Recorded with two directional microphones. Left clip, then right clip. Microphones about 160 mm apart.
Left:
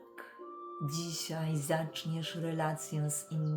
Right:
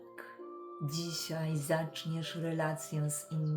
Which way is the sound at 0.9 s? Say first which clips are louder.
Right 2 dB; 10° left (ahead or behind).